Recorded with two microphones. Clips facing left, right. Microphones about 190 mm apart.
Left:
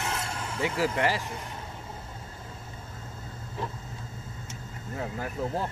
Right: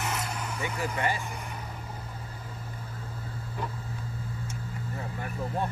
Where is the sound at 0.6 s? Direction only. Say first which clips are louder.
Left 6 dB; 90° left.